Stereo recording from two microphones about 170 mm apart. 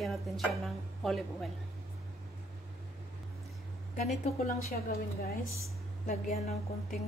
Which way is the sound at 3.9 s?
45° left (ahead or behind).